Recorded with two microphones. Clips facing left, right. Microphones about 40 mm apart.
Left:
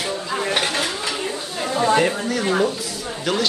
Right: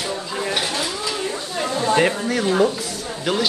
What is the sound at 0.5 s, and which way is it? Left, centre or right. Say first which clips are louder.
Speech: left 2 dB; left.